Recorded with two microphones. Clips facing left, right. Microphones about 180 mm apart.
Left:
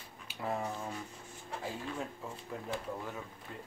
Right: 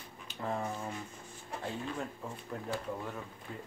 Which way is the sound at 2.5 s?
Centre (ahead or behind).